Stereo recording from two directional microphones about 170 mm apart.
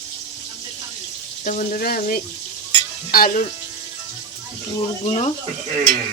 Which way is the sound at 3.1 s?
55° left (ahead or behind).